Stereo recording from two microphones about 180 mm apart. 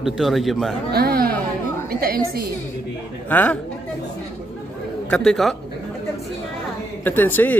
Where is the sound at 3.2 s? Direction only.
10° left (ahead or behind).